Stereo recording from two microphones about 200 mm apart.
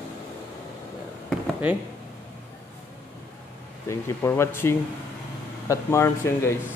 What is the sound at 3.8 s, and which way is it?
A man's voice, 10° left (ahead or behind).